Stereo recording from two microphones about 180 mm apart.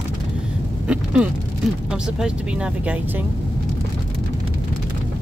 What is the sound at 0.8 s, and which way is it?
Vehicle, 5° right (ahead or behind).